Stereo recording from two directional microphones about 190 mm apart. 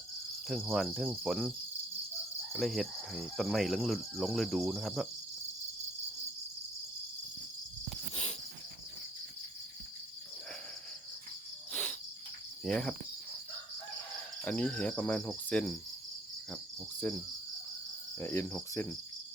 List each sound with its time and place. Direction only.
0.4 s cricket: centre (ahead or behind)
8.1 s cricket: 35° left (ahead or behind)
11.7 s cricket: 5° left (ahead or behind)
12.6 s insect: centre (ahead or behind)
14.4 s cricket: 5° left (ahead or behind)
17.0 s insect: 5° left (ahead or behind)